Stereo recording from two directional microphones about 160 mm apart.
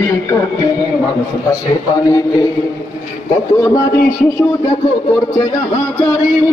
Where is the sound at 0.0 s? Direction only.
20° left (ahead or behind).